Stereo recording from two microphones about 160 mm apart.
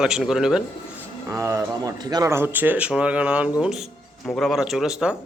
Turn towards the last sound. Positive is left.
turn(degrees=-5)  # may be behind; listen again after turning